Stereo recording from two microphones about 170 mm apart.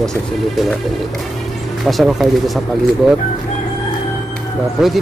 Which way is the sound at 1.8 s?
Centre (ahead or behind).